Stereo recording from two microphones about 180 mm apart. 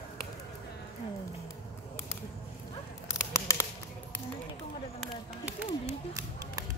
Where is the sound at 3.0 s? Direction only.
15° left (ahead or behind).